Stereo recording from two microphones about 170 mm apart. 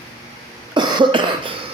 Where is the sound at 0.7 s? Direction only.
25° right (ahead or behind).